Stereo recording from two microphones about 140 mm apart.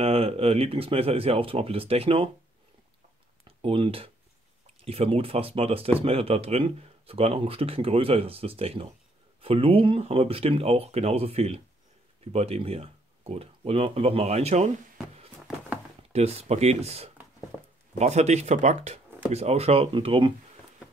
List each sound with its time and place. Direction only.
0.0 s speech: 45° right (ahead or behind)
3.4 s speech: 40° right (ahead or behind)
15.4 s a sound: 5° right (ahead or behind)
16.1 s speech: 50° right (ahead or behind)
17.5 s a sound: 5° right (ahead or behind)
17.9 s speech: 50° right (ahead or behind)